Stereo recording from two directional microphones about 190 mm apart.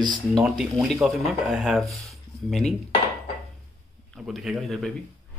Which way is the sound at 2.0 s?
Centre (ahead or behind).